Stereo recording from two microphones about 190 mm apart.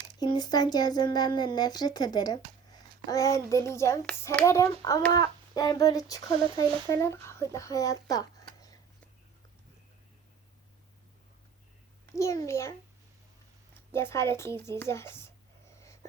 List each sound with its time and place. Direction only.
0.2 s speech: 20° left (ahead or behind)
12.1 s speech: 15° left (ahead or behind)
13.9 s speech: 15° left (ahead or behind)